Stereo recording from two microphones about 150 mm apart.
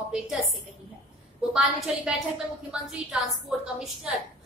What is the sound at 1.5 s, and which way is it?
A woman's voice, 5° right (ahead or behind).